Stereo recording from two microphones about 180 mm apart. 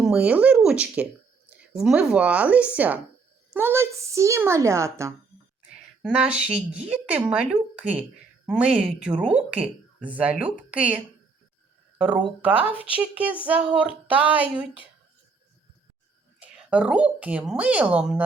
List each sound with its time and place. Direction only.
0.0 s a woman's voice: 5° right (ahead or behind)
16.4 s speech: 5° right (ahead or behind)